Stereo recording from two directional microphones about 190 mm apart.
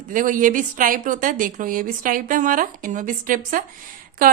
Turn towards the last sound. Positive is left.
turn(degrees=-45)  # may be behind; listen again after turning